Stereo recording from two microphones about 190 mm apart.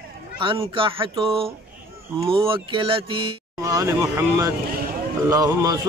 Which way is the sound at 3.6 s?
15° right (ahead or behind).